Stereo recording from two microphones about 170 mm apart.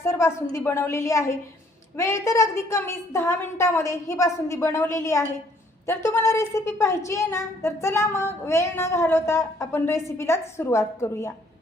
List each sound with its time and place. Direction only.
0.0 s a woman's voice: 15° left (ahead or behind)